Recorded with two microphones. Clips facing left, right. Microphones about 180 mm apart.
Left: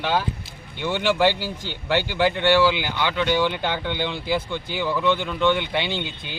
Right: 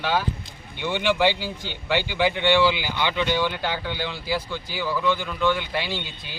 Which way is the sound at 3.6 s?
5° right (ahead or behind).